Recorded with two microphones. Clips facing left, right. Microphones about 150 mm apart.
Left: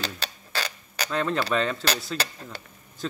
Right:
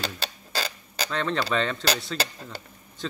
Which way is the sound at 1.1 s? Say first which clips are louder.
Left 1 dB; 5° left (ahead or behind).